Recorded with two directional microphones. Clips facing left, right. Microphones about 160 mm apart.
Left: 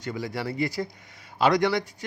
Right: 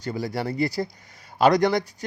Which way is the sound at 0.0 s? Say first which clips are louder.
Right 3 dB; 35° right (ahead or behind).